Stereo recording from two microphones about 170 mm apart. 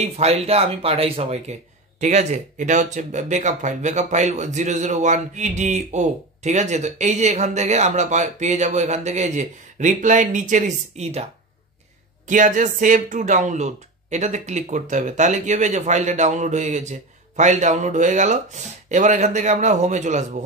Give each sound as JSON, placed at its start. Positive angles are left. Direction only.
{"t": 0.0, "sound": "speech", "side_deg": -40}
{"t": 12.3, "sound": "speech", "side_deg": -50}